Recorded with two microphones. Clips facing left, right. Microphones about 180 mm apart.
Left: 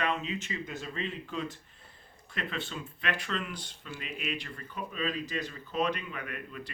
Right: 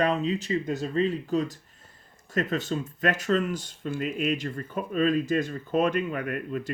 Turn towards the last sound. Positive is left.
turn(degrees=-45)  # may be behind; listen again after turning